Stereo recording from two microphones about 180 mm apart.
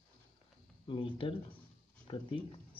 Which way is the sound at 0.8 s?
30° left (ahead or behind).